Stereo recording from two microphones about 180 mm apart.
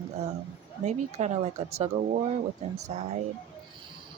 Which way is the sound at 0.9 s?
40° right (ahead or behind).